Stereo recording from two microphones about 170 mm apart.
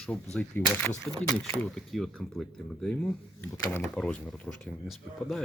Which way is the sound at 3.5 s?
15° left (ahead or behind).